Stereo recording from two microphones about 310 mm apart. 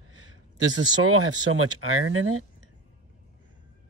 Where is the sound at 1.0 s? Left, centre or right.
Right.